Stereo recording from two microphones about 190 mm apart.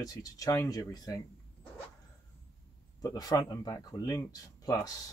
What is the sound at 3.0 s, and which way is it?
Speech, 20° left (ahead or behind).